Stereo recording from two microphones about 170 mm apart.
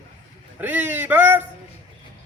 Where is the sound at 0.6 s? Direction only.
10° right (ahead or behind).